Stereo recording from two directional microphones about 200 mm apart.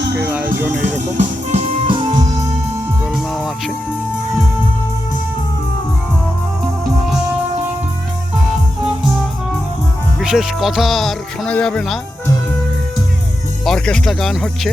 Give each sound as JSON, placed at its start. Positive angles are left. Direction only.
{"t": 0.0, "sound": "music", "side_deg": -55}
{"t": 1.1, "sound": "music", "side_deg": -35}
{"t": 3.0, "sound": "music", "side_deg": 0}
{"t": 10.2, "sound": "speech", "side_deg": 0}
{"t": 13.7, "sound": "speech", "side_deg": 5}